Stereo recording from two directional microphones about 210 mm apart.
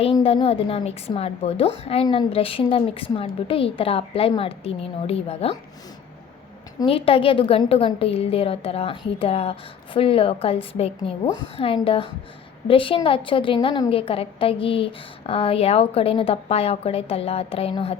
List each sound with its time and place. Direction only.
0.0 s a woman's voice: 25° left (ahead or behind)
6.7 s a woman's voice: 25° left (ahead or behind)